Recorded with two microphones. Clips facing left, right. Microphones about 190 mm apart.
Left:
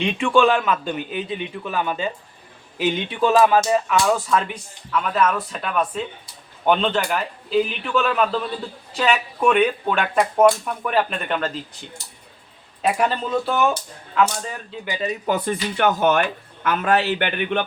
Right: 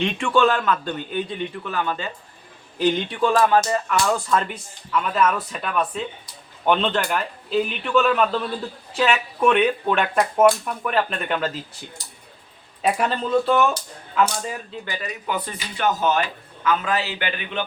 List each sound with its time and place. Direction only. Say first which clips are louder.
0.2 s speech: left 3 dB; 10° left (ahead or behind)
12.8 s speech: left 1 dB; centre (ahead or behind)
14.8 s speech: left 7 dB; 20° left (ahead or behind)
15.3 s speech: left 5 dB; 55° left (ahead or behind)